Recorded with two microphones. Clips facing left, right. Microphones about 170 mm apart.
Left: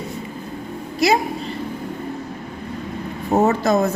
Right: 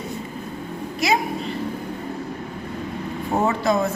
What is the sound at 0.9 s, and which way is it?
Speech, 35° left (ahead or behind).